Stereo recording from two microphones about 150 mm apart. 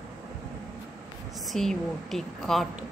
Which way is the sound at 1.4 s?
Centre (ahead or behind).